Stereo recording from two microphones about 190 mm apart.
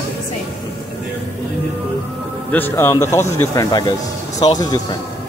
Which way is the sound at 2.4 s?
10° left (ahead or behind).